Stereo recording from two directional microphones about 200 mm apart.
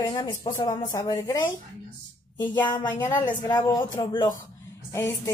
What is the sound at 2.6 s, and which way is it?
Speech, 15° left (ahead or behind).